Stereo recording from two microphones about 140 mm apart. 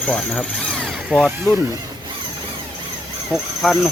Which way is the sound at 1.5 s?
25° right (ahead or behind).